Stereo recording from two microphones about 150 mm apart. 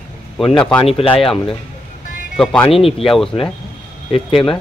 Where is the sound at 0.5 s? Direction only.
5° left (ahead or behind).